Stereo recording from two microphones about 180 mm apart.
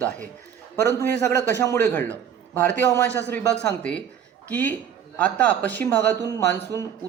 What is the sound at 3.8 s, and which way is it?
A man's voice, 5° left (ahead or behind).